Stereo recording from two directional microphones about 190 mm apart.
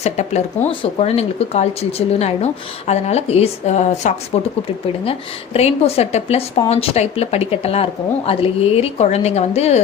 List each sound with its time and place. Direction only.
0.0 s speech: 35° left (ahead or behind)
5.5 s speech: 35° left (ahead or behind)